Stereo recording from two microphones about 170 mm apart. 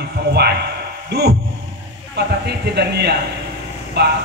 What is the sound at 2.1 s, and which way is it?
A man's voice, 75° right (ahead or behind).